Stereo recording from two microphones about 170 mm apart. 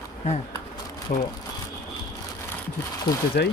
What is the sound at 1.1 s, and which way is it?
Speech, 45° left (ahead or behind).